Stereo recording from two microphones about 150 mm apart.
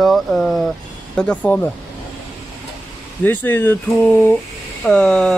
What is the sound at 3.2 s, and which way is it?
Speech, 15° left (ahead or behind).